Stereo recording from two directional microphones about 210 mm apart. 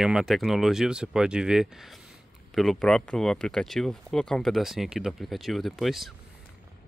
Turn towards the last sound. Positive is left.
turn(degrees=0)  # may be behind; listen again after turning